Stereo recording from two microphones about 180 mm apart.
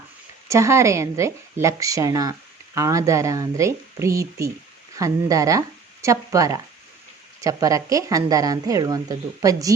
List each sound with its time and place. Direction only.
0.4 s a woman's voice: 15° right (ahead or behind)